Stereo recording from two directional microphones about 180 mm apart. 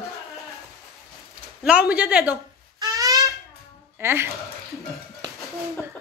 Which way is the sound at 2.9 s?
20° right (ahead or behind).